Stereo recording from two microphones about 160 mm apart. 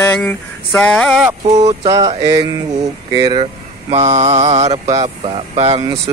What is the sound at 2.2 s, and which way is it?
Mantra, 25° right (ahead or behind).